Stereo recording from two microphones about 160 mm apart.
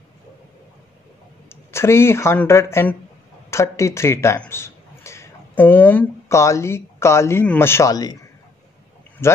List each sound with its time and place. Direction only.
1.5 s speech: 15° left (ahead or behind)
9.2 s speech: 15° left (ahead or behind)